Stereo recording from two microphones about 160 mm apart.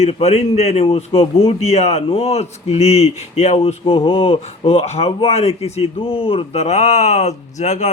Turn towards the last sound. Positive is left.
turn(degrees=45)  # may be behind; listen again after turning